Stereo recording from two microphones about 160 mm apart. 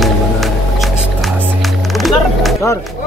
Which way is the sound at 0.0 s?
Centre (ahead or behind).